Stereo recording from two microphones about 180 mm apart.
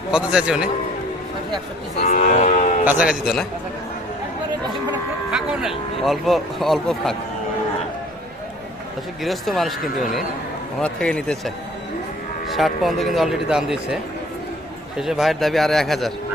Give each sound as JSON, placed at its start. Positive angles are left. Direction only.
{"t": 0.1, "sound": "speech", "side_deg": -5}
{"t": 2.0, "sound": "cattle", "side_deg": 45}
{"t": 2.8, "sound": "speech", "side_deg": -5}
{"t": 5.3, "sound": "speech", "side_deg": -5}
{"t": 9.2, "sound": "speech", "side_deg": 0}